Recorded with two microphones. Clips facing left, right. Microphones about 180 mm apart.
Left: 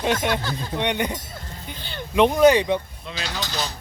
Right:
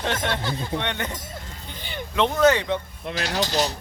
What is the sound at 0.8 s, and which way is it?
Speech, 15° left (ahead or behind).